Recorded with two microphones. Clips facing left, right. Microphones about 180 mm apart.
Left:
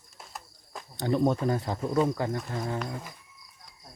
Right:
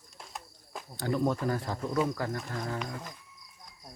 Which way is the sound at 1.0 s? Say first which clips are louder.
Left 4 dB; 25° left (ahead or behind).